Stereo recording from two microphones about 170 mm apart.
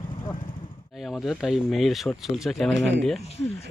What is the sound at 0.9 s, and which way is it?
Speech, centre (ahead or behind).